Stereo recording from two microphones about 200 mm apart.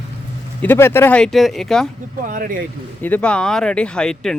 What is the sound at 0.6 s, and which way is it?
Speech, 10° left (ahead or behind).